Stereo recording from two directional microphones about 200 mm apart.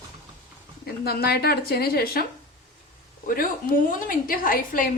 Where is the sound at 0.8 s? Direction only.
50° left (ahead or behind).